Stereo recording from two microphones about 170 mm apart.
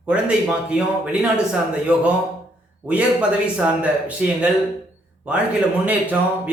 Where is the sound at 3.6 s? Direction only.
5° right (ahead or behind).